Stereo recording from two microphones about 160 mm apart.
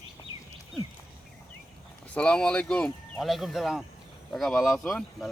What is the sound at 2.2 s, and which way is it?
Speech, 5° left (ahead or behind).